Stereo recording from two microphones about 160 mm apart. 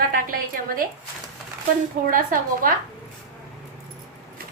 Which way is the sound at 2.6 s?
60° right (ahead or behind).